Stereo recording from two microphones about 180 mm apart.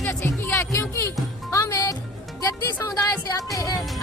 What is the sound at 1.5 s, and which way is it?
Music, 15° left (ahead or behind).